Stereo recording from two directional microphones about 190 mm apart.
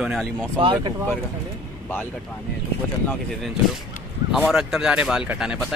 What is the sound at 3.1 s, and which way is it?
Speech, centre (ahead or behind).